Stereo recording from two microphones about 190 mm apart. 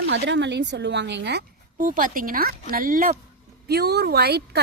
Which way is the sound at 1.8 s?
45° right (ahead or behind).